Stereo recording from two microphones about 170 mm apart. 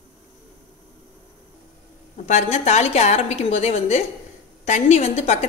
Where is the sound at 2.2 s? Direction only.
40° left (ahead or behind).